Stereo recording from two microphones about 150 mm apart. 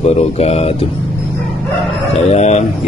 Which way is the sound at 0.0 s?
45° left (ahead or behind).